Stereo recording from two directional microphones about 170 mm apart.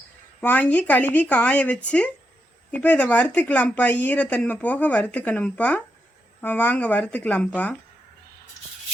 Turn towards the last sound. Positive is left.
turn(degrees=10)  # may be behind; listen again after turning